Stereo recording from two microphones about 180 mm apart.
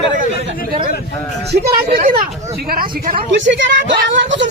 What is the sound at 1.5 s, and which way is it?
Speech, 55° right (ahead or behind).